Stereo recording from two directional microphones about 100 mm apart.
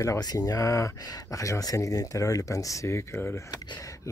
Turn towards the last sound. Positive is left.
turn(degrees=25)  # may be behind; listen again after turning